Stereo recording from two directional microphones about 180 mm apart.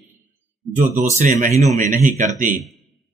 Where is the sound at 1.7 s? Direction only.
45° right (ahead or behind).